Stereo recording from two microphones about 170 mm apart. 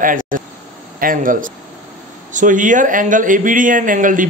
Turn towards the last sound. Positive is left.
turn(degrees=-50)  # may be behind; listen again after turning